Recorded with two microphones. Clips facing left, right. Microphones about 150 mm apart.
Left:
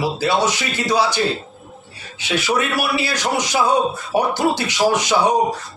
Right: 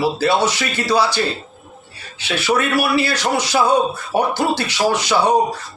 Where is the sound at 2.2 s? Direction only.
15° left (ahead or behind).